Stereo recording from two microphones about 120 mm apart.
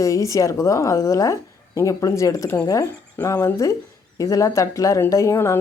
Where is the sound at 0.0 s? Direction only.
25° left (ahead or behind).